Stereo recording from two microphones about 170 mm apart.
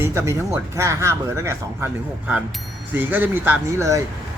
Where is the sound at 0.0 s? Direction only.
15° right (ahead or behind).